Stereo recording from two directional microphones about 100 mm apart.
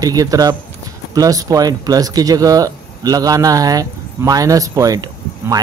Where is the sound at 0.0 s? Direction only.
35° right (ahead or behind).